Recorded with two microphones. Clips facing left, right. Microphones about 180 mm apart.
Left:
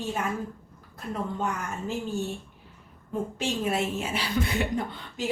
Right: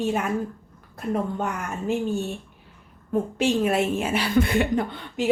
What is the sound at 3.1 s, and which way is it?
A woman's voice, 65° right (ahead or behind).